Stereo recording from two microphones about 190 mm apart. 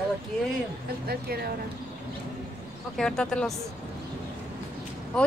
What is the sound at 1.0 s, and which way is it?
Speech, 55° right (ahead or behind).